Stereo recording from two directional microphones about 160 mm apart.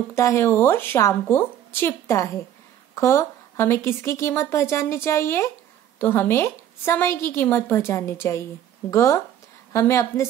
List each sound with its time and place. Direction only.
0.1 s a woman's voice: 20° left (ahead or behind)